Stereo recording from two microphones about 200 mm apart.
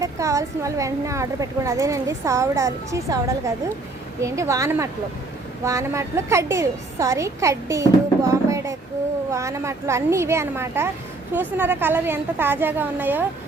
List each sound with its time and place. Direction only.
0.0 s speech: 15° right (ahead or behind)